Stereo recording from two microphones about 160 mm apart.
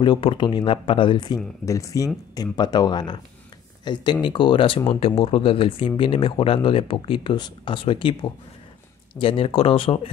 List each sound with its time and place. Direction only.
0.0 s speech: 35° left (ahead or behind)